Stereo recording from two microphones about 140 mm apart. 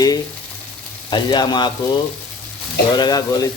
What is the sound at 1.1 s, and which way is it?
Speech, 30° left (ahead or behind).